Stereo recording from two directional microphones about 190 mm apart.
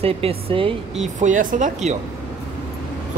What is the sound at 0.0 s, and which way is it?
Speech, 30° right (ahead or behind).